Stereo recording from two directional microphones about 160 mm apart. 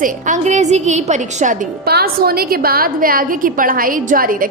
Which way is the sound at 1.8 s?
80° right.